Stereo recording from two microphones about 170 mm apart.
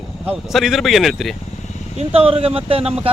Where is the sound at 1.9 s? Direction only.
35° right (ahead or behind).